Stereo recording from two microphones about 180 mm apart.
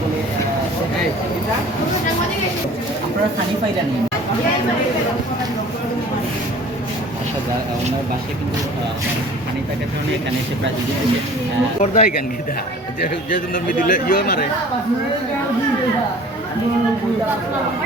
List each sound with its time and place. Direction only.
11.8 s speech: 45° left (ahead or behind)